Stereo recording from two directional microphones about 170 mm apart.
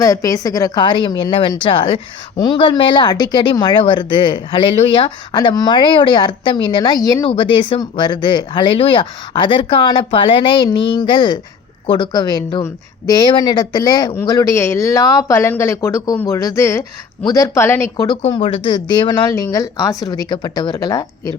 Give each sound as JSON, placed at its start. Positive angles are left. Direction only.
{"t": 0.0, "sound": "a woman's voice", "side_deg": 20}